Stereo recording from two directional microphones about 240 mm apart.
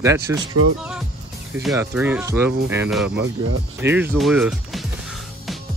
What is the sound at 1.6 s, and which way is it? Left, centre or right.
Speech, centre.